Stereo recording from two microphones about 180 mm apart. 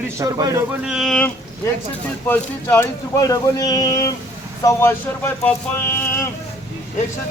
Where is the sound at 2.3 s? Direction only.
10° left (ahead or behind).